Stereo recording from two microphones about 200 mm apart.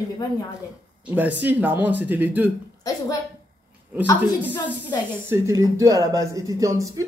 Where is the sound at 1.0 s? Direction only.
10° right (ahead or behind).